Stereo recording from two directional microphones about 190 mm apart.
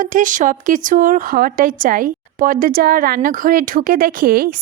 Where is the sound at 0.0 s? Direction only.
45° right (ahead or behind).